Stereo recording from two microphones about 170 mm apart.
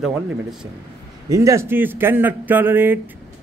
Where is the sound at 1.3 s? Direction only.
20° right (ahead or behind).